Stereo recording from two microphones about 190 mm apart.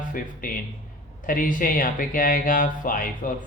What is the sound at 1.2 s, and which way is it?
Speech, 45° left (ahead or behind).